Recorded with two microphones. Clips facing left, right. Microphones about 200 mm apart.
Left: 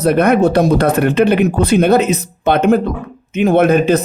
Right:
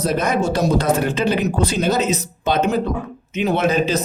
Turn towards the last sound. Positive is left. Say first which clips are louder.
# left 7 dB
turn(degrees=55)  # may be behind; listen again after turning